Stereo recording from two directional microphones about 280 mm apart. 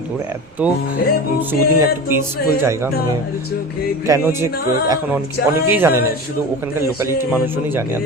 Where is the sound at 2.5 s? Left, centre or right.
Centre.